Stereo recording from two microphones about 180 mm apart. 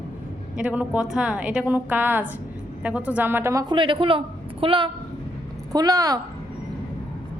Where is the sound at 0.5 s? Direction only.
5° right (ahead or behind).